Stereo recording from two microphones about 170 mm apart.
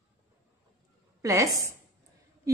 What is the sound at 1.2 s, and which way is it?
Speech, 20° right (ahead or behind).